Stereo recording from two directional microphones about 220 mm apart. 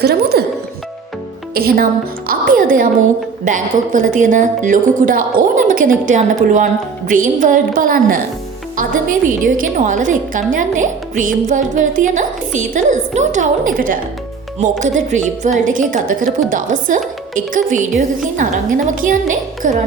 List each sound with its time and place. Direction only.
0.0 s music: 45° right (ahead or behind)
1.5 s a woman's voice: 40° right (ahead or behind)